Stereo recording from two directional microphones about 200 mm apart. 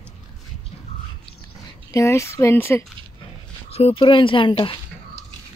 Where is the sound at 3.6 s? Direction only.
30° left (ahead or behind).